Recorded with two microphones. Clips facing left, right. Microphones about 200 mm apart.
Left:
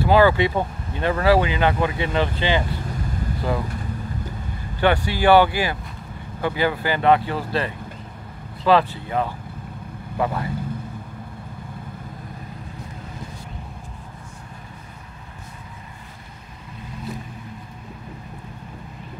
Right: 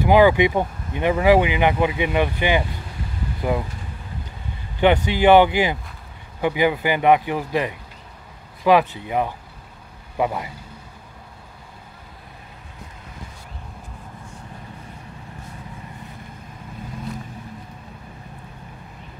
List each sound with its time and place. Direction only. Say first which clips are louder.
0.0 s speech: right 2 dB; 15° right (ahead or behind)
4.7 s speech: right 3 dB; 20° right (ahead or behind)